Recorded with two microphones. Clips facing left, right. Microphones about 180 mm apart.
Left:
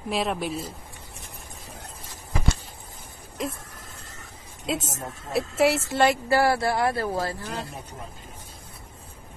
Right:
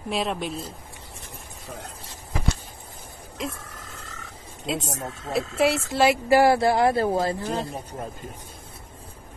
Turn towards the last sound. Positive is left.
turn(degrees=-25)  # may be behind; listen again after turning